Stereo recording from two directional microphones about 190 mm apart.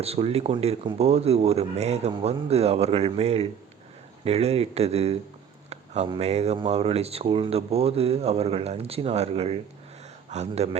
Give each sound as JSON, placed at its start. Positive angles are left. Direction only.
{"t": 0.0, "sound": "speech", "side_deg": -30}